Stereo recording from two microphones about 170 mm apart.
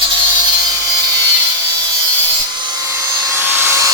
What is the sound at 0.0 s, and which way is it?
Wood, 25° right (ahead or behind).